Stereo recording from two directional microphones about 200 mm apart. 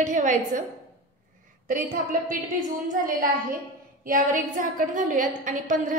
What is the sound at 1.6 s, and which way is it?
A woman's voice, 45° right (ahead or behind).